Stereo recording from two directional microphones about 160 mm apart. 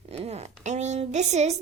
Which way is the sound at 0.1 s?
40° right (ahead or behind).